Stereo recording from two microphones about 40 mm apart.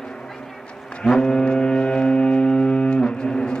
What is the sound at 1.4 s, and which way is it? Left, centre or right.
Music, centre.